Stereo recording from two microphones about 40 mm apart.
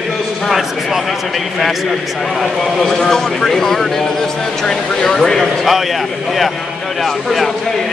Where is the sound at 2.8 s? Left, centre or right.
Centre.